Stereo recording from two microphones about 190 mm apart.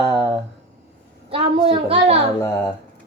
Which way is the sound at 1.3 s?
30° right (ahead or behind).